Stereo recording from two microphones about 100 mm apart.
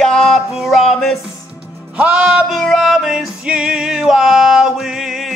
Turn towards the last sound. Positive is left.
turn(degrees=-5)  # may be behind; listen again after turning